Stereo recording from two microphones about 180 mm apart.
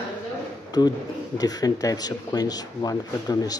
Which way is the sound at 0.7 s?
20° left (ahead or behind).